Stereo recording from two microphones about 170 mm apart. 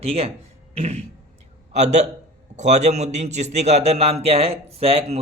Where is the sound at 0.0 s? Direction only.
35° right (ahead or behind).